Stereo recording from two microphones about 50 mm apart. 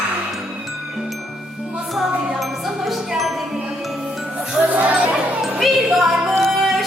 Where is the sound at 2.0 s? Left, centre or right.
Centre.